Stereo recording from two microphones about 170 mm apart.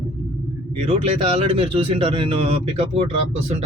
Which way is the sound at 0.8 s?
35° right (ahead or behind).